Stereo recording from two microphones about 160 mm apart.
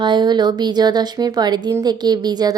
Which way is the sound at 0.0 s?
30° right (ahead or behind).